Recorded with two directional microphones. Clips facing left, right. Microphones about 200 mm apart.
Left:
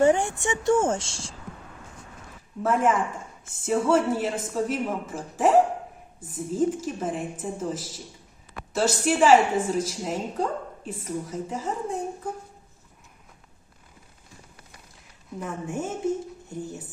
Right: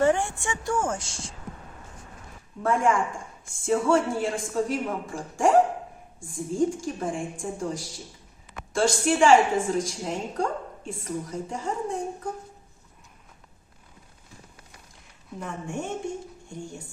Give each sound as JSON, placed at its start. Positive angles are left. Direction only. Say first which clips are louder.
{"t": 0.0, "sound": "a woman's voice", "louder": "left 2 dB", "side_deg": 15}
{"t": 2.6, "sound": "a woman's voice", "louder": "even", "side_deg": 5}
{"t": 15.4, "sound": "a woman's voice", "louder": "left 2 dB", "side_deg": 5}